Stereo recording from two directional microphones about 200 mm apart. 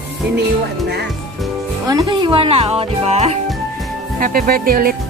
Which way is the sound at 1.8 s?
20° right (ahead or behind).